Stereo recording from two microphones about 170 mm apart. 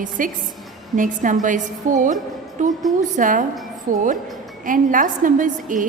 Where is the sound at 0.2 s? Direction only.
50° right (ahead or behind).